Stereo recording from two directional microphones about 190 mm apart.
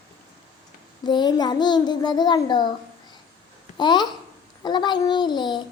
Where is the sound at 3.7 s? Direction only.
25° left (ahead or behind).